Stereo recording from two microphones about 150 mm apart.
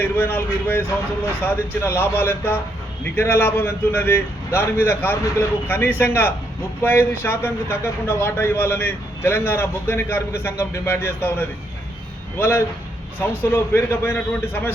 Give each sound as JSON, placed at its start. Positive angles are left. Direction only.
{"t": 0.0, "sound": "a man's voice", "side_deg": 15}